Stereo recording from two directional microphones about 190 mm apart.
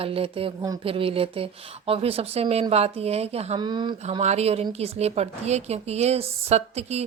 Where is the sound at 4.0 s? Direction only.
35° right (ahead or behind).